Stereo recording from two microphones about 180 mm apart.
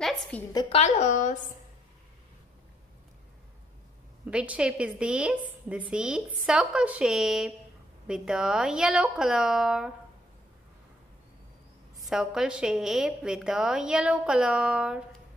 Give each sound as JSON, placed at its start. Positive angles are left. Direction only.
{"t": 0.5, "sound": "a woman's voice", "side_deg": 20}
{"t": 0.7, "sound": "speech", "side_deg": 40}
{"t": 4.3, "sound": "a woman's voice", "side_deg": -5}
{"t": 12.0, "sound": "a woman's voice", "side_deg": 0}